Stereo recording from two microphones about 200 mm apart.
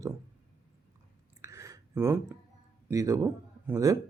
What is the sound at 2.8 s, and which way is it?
Speech, 15° right (ahead or behind).